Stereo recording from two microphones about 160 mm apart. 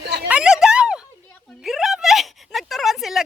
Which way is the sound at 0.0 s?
90° right.